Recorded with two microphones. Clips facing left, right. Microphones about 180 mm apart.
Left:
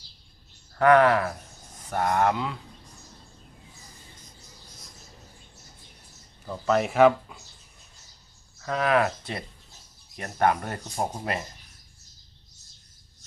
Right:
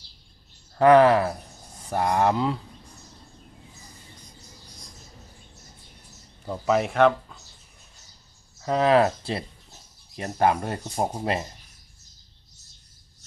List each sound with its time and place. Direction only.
0.8 s speech: 25° right (ahead or behind)
6.7 s speech: centre (ahead or behind)
8.6 s speech: 25° right (ahead or behind)